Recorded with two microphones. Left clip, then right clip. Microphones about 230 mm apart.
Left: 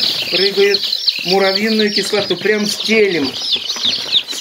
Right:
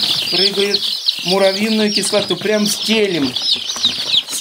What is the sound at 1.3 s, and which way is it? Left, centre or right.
Speech, right.